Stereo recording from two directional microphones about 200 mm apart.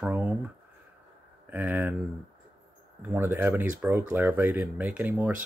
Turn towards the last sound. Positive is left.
turn(degrees=-10)  # may be behind; listen again after turning